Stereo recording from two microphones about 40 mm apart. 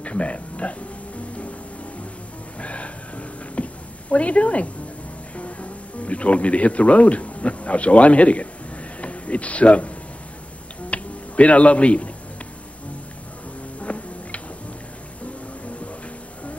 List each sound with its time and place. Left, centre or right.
0.0 s speech: left
2.6 s a sound: left
5.3 s a man's voice: left
10.9 s finger snapping: left
13.7 s music: left